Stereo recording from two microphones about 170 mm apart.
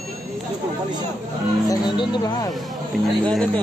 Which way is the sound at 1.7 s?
20° left (ahead or behind).